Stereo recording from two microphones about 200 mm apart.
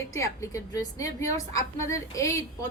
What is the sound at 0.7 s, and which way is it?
A woman's voice, 15° left (ahead or behind).